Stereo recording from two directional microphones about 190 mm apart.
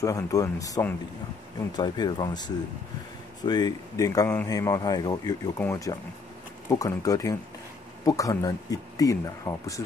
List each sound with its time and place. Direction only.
0.0 s speech: 15° left (ahead or behind)